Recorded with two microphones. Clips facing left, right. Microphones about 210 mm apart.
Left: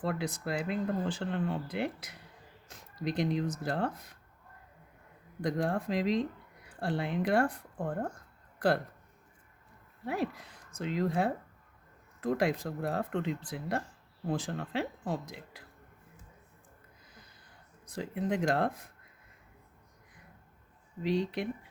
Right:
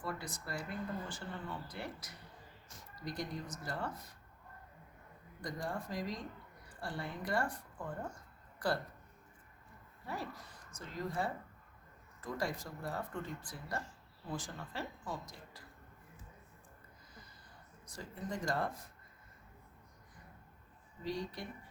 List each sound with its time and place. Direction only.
0.0 s speech: 80° left
2.6 s speech: 90° left
5.4 s speech: 75° left (ahead or behind); by 6.2 s 90° left
6.7 s speech: 75° left (ahead or behind); by 8.1 s 60° left (ahead or behind)
10.1 s speech: 70° left (ahead or behind)
17.8 s speech: 65° left (ahead or behind)